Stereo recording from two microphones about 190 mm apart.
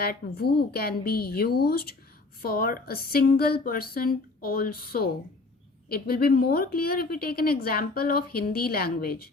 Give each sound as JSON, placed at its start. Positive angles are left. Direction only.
{"t": 0.0, "sound": "a woman's voice", "side_deg": 55}